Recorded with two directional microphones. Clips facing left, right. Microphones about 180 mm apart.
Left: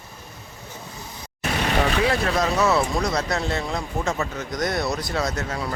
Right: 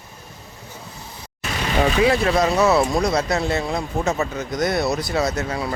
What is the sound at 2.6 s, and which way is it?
Speech, 30° right (ahead or behind).